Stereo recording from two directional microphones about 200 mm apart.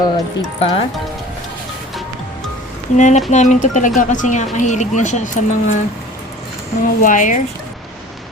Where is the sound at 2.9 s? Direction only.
35° left (ahead or behind).